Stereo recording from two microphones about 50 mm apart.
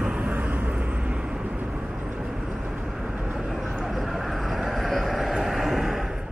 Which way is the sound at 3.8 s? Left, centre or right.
Centre.